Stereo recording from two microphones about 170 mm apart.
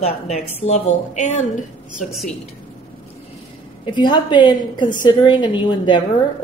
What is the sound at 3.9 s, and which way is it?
A woman's voice, 25° left (ahead or behind).